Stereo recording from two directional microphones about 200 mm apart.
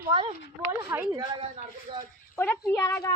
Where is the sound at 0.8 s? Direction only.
10° right (ahead or behind).